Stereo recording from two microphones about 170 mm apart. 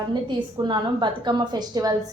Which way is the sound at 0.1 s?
25° right (ahead or behind).